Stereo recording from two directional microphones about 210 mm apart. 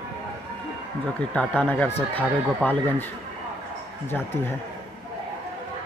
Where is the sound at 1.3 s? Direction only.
5° left (ahead or behind).